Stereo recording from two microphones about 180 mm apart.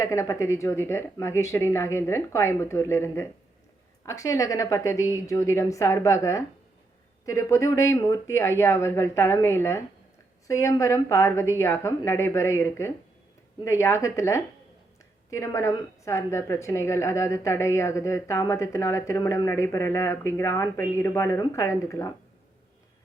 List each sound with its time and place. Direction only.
0.0 s a woman's voice: 20° left (ahead or behind)